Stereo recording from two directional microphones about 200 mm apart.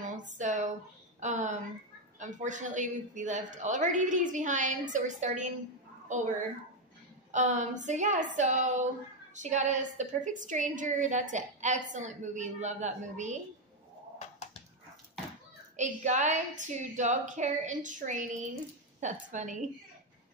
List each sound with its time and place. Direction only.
0.0 s a sound: 40° right (ahead or behind)
2.1 s a woman's voice: 40° right (ahead or behind)
15.7 s a woman's voice: 35° right (ahead or behind)